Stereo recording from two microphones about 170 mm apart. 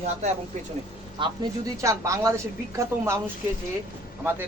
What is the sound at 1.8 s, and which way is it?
A man's voice, 20° right (ahead or behind).